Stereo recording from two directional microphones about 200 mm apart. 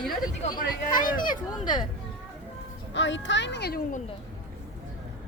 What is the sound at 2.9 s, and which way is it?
A child's voice, 65° left (ahead or behind).